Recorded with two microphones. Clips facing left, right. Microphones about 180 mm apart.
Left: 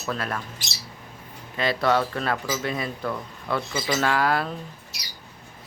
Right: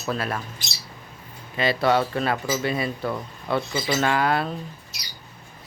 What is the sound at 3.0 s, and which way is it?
Speech, 25° right (ahead or behind).